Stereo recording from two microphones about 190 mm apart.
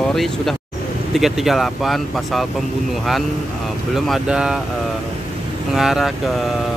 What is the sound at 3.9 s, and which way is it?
Speech, centre (ahead or behind).